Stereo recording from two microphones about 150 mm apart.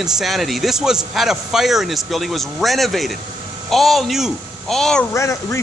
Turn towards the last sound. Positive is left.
turn(degrees=20)  # may be behind; listen again after turning